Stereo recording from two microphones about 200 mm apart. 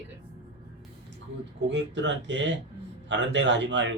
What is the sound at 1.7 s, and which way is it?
A man's voice, 65° right (ahead or behind).